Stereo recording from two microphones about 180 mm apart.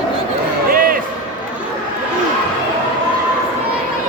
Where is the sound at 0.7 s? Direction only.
55° right (ahead or behind).